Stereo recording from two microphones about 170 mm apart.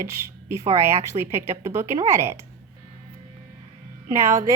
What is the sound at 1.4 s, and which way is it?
A woman's voice, 15° right (ahead or behind).